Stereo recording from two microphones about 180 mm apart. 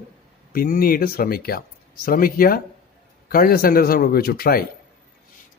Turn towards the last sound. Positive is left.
turn(degrees=55)  # may be behind; listen again after turning